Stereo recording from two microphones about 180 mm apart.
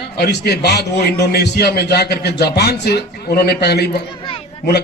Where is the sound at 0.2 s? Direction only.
70° left (ahead or behind).